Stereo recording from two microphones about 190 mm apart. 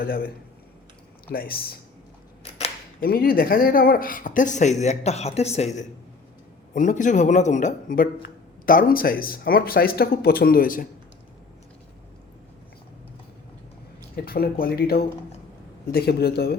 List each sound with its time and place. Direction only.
0.0 s speech: 50° left (ahead or behind)
1.3 s speech: 50° left (ahead or behind)
3.0 s a man's voice: 50° left (ahead or behind)
14.3 s speech: 55° left (ahead or behind)